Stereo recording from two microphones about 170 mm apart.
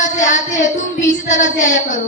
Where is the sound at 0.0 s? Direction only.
45° left (ahead or behind).